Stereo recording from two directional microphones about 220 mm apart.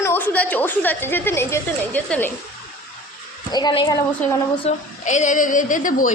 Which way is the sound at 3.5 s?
20° left (ahead or behind).